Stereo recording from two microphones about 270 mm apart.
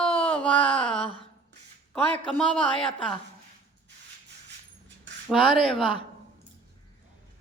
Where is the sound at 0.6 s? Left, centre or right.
Left.